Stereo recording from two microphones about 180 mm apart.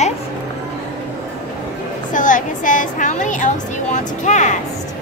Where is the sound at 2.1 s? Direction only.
45° left (ahead or behind).